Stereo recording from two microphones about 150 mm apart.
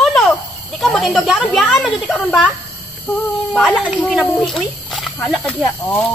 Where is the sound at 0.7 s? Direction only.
Centre (ahead or behind).